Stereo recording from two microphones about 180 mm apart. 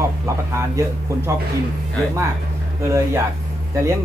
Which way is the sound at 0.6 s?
15° right (ahead or behind).